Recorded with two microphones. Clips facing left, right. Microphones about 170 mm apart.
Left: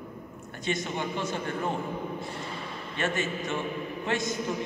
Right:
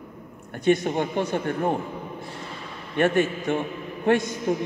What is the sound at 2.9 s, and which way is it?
A man's voice, 60° right (ahead or behind).